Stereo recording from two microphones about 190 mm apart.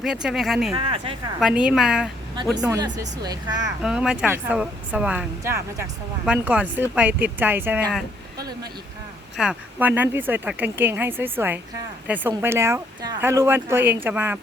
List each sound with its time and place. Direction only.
0.0 s speech: 5° right (ahead or behind)
0.7 s speech: 30° right (ahead or behind)
1.4 s speech: 5° right (ahead or behind)
2.6 s speech: 20° right (ahead or behind)
3.8 s speech: 5° right (ahead or behind)
9.4 s speech: 5° right (ahead or behind)